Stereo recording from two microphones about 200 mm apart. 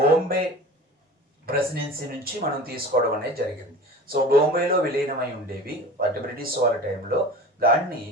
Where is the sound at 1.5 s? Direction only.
50° right (ahead or behind).